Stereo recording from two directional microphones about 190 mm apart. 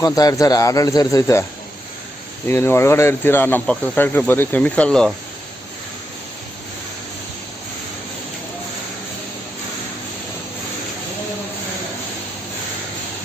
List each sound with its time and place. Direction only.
0.0 s speech: 20° left (ahead or behind)
2.5 s speech: 10° left (ahead or behind)